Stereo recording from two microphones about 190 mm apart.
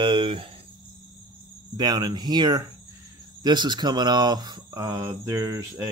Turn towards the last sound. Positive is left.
turn(degrees=-15)  # may be behind; listen again after turning